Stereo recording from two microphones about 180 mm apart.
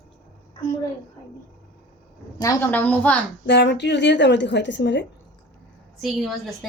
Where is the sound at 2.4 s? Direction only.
15° left (ahead or behind).